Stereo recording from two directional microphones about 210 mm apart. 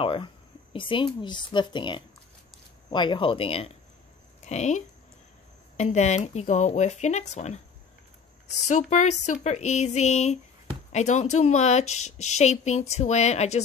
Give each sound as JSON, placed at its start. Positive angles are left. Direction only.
{"t": 0.0, "sound": "a woman's voice", "side_deg": 25}
{"t": 8.6, "sound": "speech", "side_deg": 35}